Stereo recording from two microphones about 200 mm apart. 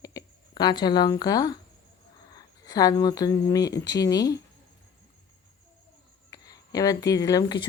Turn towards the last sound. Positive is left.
turn(degrees=20)  # may be behind; listen again after turning